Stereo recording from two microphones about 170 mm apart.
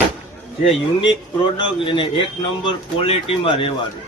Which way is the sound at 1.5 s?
30° left (ahead or behind).